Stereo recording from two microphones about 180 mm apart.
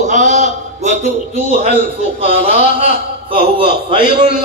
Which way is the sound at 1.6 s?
35° right (ahead or behind).